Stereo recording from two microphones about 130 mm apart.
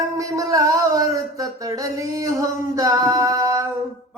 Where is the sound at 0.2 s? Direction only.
25° right (ahead or behind).